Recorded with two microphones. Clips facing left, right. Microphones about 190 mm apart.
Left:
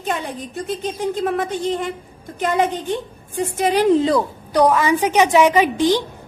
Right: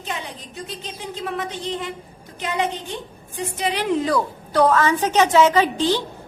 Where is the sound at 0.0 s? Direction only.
50° left (ahead or behind).